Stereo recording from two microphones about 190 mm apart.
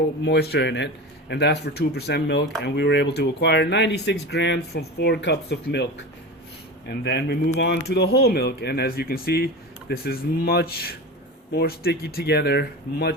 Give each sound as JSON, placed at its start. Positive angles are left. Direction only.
{"t": 0.3, "sound": "speech", "side_deg": 55}